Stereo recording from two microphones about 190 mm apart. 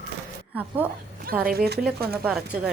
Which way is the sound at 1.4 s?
55° right (ahead or behind).